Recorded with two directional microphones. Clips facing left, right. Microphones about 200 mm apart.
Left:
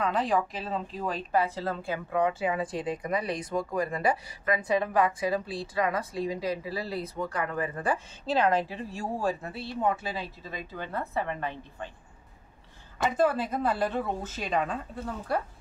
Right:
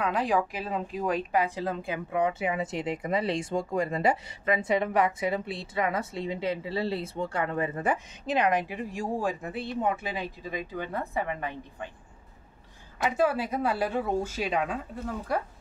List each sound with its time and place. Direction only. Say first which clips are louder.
0.0 s a woman's voice: even; 10° right (ahead or behind)
13.0 s speech: even; 10° right (ahead or behind)